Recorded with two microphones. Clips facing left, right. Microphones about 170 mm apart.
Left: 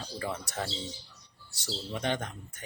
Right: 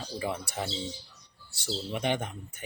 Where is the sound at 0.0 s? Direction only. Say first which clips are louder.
Right 2 dB; 10° right (ahead or behind).